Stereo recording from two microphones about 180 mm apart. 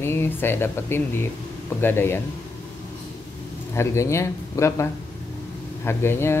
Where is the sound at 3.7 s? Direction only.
15° left (ahead or behind).